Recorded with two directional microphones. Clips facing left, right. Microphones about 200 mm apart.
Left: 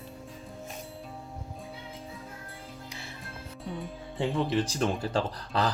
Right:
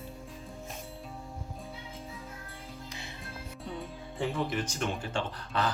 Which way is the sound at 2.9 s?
20° right (ahead or behind).